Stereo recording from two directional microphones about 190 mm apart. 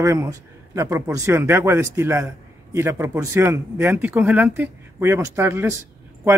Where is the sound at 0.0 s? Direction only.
15° right (ahead or behind).